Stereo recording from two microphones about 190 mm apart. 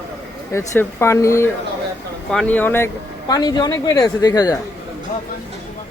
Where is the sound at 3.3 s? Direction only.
20° left (ahead or behind).